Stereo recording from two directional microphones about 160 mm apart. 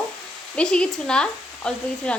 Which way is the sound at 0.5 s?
5° left (ahead or behind).